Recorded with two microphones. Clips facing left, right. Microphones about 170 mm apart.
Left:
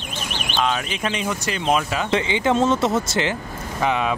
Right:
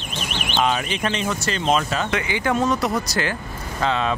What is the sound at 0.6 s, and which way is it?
Speech, centre (ahead or behind).